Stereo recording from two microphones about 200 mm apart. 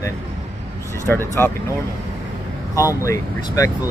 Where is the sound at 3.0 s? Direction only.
15° left (ahead or behind).